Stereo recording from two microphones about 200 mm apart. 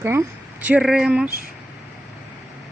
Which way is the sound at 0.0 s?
10° right (ahead or behind).